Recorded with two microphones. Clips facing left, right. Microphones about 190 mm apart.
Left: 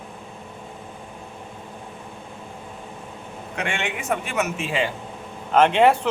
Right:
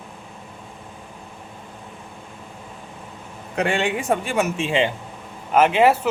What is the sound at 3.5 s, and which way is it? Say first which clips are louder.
Speech: right 7 dB; 35° right (ahead or behind).